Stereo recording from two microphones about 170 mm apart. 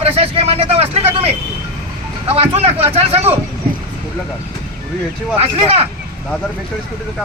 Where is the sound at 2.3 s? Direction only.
35° right (ahead or behind).